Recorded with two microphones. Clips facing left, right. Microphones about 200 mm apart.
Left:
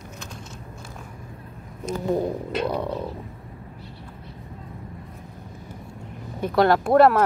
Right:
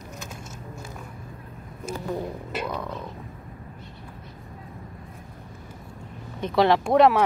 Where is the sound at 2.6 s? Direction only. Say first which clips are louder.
Left 6 dB; 35° left (ahead or behind).